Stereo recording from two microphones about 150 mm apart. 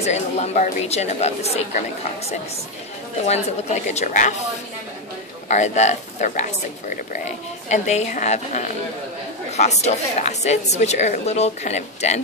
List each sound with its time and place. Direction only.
0.0 s a woman's voice: 45° left (ahead or behind)
5.5 s a woman's voice: 50° left (ahead or behind)
7.6 s a woman's voice: 50° left (ahead or behind)